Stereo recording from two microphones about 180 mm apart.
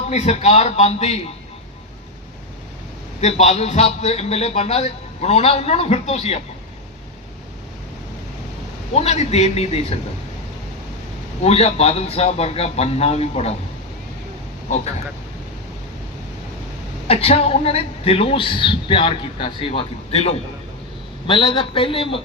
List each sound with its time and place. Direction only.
0.1 s a woman's voice: 40° left (ahead or behind)
3.2 s a woman's voice: 40° left (ahead or behind)
8.9 s a woman's voice: 35° left (ahead or behind)
11.4 s a woman's voice: 35° left (ahead or behind)
17.1 s a woman's voice: 35° left (ahead or behind)